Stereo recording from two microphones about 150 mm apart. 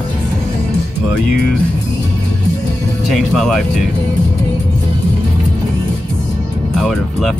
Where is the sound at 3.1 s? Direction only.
Centre (ahead or behind).